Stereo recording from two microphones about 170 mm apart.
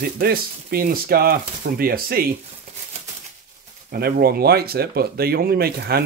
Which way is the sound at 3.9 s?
65° right (ahead or behind).